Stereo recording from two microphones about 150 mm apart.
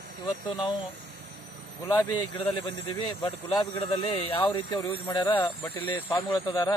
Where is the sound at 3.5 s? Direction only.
25° left (ahead or behind).